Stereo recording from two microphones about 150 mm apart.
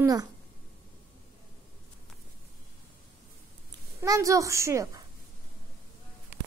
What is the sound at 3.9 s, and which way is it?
A woman's voice, 20° right (ahead or behind).